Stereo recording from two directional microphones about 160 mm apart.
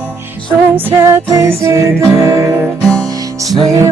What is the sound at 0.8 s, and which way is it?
Music, 15° right (ahead or behind).